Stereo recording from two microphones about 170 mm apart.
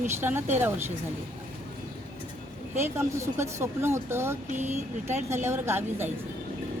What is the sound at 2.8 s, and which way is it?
Speech, 15° right (ahead or behind).